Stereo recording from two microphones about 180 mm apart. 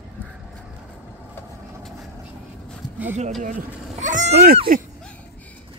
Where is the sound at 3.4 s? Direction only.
45° right (ahead or behind).